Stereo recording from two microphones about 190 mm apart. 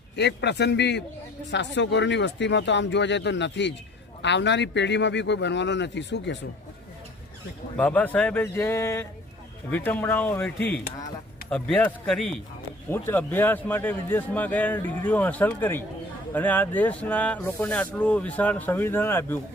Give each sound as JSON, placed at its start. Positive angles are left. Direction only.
{"t": 0.2, "sound": "a man's voice", "side_deg": 65}
{"t": 7.8, "sound": "speech", "side_deg": 10}